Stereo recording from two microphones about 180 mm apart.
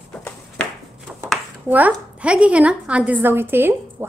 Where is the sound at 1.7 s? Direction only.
10° right (ahead or behind).